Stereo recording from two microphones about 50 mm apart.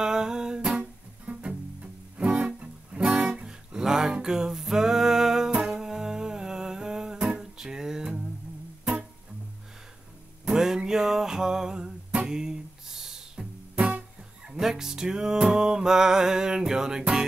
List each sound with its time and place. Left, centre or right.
0.0 s music: centre
5.6 s humming: centre
10.4 s music: centre